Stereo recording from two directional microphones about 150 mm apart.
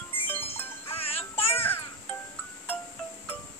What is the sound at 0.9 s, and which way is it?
Music, 40° left (ahead or behind).